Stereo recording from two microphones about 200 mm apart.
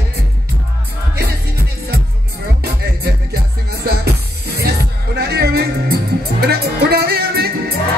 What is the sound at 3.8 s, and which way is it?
Music, 50° right (ahead or behind).